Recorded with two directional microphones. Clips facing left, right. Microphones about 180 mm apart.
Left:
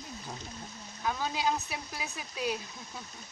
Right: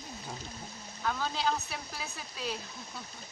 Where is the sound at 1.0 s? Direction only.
15° left (ahead or behind).